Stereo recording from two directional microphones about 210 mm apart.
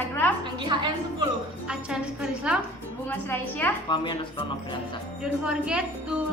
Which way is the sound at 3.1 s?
10° left (ahead or behind).